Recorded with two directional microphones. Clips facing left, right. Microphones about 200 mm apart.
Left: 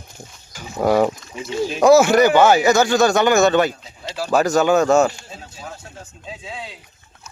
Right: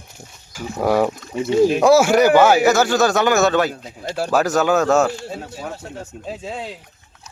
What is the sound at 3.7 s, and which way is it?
Speech, 55° right (ahead or behind).